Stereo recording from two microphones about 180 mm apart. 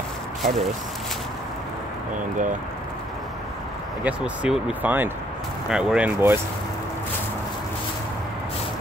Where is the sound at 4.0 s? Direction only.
5° right (ahead or behind).